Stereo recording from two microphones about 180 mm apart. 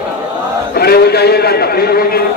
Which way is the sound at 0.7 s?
60° left (ahead or behind).